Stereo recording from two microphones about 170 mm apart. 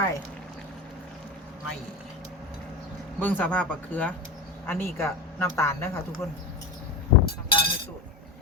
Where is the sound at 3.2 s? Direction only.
10° left (ahead or behind).